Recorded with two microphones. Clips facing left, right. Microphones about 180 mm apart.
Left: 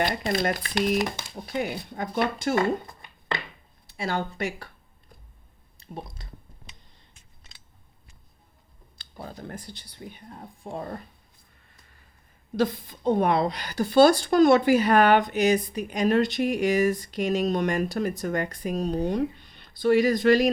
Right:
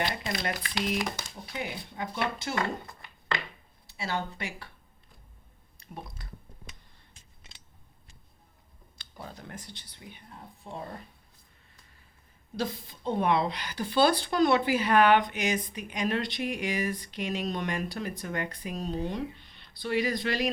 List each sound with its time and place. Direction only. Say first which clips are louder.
0.0 s speech: left 7 dB; 45° left (ahead or behind)
3.8 s speech: left 4 dB; 50° left (ahead or behind)
5.8 s speech: left 5 dB; 25° left (ahead or behind)
9.0 s speech: left 5 dB; 35° left (ahead or behind)
12.5 s speech: left 8 dB; 50° left (ahead or behind)